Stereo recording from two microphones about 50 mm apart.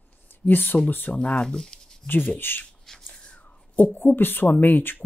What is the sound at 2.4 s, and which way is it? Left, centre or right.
Speech, left.